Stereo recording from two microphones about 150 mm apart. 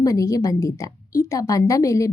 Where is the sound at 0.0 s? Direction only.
20° left (ahead or behind).